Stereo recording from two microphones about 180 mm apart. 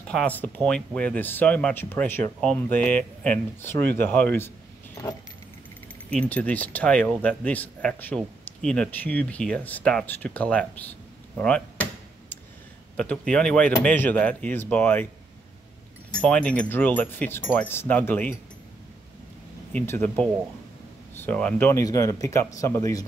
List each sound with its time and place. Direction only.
0.1 s speech: 5° left (ahead or behind)
6.0 s speech: 10° left (ahead or behind)
12.9 s speech: 5° left (ahead or behind)
16.1 s speech: 5° left (ahead or behind)
19.7 s speech: 10° left (ahead or behind)